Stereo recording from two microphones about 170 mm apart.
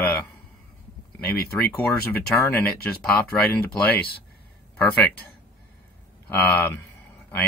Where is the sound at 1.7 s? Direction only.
10° left (ahead or behind).